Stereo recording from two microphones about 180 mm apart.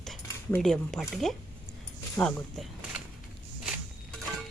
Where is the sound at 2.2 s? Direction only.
20° left (ahead or behind).